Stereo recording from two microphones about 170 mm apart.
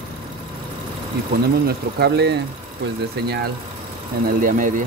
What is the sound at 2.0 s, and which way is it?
Speech, 75° right (ahead or behind).